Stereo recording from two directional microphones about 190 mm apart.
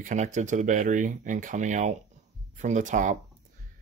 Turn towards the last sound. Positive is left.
turn(degrees=-40)  # may be behind; listen again after turning